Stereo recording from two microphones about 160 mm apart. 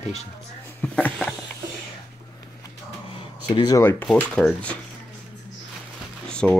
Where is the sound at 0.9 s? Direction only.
10° left (ahead or behind).